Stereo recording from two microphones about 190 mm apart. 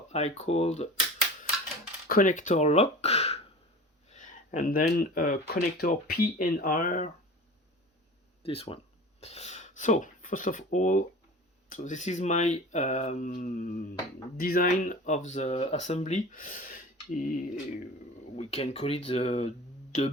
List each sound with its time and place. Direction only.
0.1 s speech: 35° left (ahead or behind)
2.0 s speech: 45° left (ahead or behind)
8.4 s speech: 30° left (ahead or behind)
18.3 s speech: 35° left (ahead or behind)